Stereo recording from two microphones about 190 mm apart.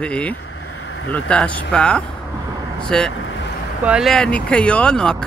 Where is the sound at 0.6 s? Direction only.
90° left.